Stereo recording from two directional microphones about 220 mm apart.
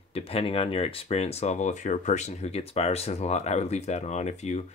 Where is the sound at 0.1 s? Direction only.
25° left (ahead or behind).